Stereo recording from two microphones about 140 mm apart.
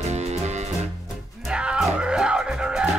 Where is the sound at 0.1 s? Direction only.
50° right (ahead or behind).